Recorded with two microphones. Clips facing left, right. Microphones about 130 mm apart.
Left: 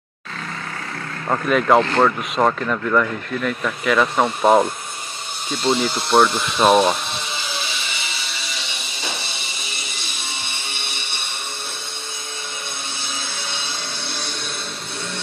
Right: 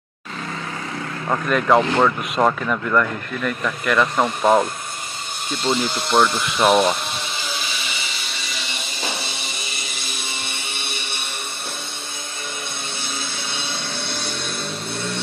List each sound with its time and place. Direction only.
1.3 s speech: 5° left (ahead or behind)